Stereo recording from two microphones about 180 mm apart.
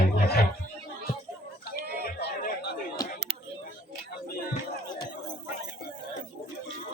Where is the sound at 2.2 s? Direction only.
65° left (ahead or behind).